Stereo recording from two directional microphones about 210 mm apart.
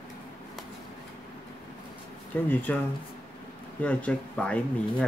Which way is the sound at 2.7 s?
5° left (ahead or behind).